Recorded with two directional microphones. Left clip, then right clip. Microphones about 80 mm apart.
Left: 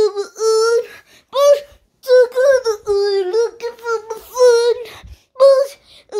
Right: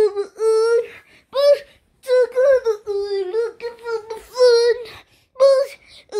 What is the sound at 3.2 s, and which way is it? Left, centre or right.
Child singing, left.